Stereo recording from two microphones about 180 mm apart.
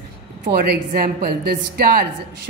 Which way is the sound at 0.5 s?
60° right (ahead or behind).